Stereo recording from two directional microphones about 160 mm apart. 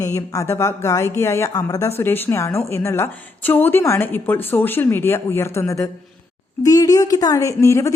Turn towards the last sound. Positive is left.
turn(degrees=20)  # may be behind; listen again after turning